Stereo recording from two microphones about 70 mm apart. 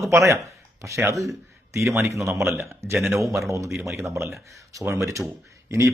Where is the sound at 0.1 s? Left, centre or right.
Right.